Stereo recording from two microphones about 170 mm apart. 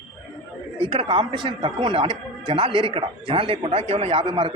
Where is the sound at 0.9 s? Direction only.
30° right (ahead or behind).